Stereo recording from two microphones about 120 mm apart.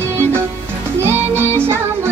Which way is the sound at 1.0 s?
20° right (ahead or behind).